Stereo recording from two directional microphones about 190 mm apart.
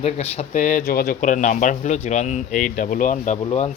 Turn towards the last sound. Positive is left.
turn(degrees=35)  # may be behind; listen again after turning